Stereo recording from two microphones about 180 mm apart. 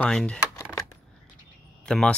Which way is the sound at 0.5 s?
15° left (ahead or behind).